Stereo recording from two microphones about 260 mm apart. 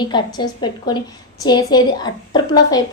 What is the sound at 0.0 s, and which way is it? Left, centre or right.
A woman's voice, centre.